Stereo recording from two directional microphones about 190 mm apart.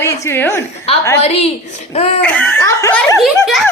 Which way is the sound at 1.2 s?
30° left (ahead or behind).